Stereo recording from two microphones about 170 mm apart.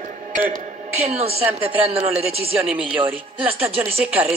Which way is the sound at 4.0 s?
10° right (ahead or behind).